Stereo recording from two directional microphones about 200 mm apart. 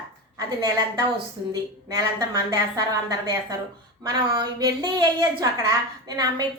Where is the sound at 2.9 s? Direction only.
20° right (ahead or behind).